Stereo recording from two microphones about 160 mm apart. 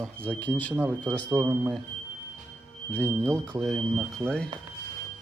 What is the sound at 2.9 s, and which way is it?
Speech, 10° left (ahead or behind).